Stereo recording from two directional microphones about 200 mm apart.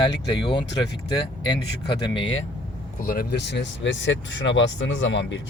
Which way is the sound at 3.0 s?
45° left (ahead or behind).